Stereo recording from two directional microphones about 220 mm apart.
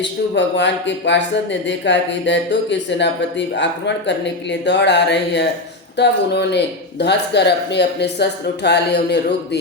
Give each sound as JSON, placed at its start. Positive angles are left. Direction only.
{"t": 0.0, "sound": "speech", "side_deg": 55}